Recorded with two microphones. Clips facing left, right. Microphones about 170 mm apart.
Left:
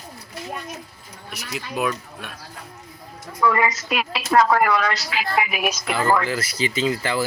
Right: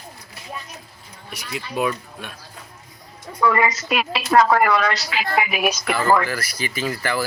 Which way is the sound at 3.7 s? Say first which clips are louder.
Right 2 dB; centre (ahead or behind).